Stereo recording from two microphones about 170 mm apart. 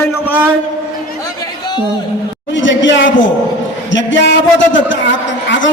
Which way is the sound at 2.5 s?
90° left.